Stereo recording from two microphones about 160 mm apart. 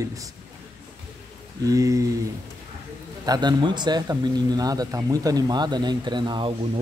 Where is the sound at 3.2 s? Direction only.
25° right (ahead or behind).